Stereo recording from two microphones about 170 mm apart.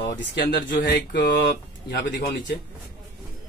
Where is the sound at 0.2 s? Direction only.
90° left.